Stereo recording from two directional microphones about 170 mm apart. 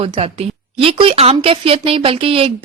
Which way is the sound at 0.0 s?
35° right (ahead or behind).